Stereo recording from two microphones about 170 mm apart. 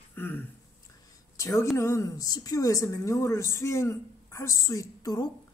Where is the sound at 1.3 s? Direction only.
20° left (ahead or behind).